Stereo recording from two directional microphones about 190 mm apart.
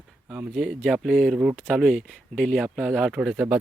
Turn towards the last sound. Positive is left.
turn(degrees=-5)  # may be behind; listen again after turning